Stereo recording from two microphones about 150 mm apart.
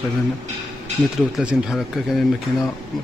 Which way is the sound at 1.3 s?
Centre (ahead or behind).